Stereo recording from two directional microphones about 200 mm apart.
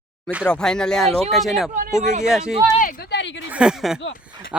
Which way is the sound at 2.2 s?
5° right (ahead or behind).